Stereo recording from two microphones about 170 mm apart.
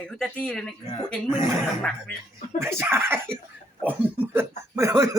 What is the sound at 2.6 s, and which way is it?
Speech, 15° right (ahead or behind).